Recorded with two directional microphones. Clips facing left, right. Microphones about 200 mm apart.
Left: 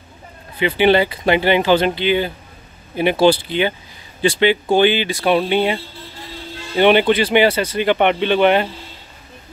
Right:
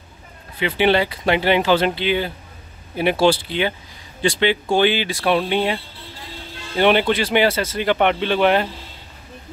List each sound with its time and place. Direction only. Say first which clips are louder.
0.6 s speech: left 3 dB; centre (ahead or behind)